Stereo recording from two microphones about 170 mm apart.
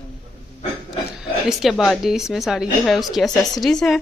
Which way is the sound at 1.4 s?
Centre (ahead or behind).